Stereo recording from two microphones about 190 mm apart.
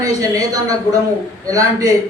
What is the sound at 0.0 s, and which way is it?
A man's voice, 20° right (ahead or behind).